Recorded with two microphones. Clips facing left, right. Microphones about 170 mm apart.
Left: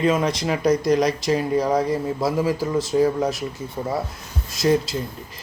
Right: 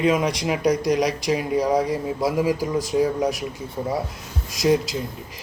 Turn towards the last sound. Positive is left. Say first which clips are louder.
# even
turn(degrees=-15)  # may be behind; listen again after turning